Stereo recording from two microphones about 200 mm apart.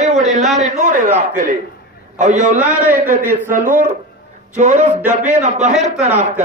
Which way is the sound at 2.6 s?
5° right (ahead or behind).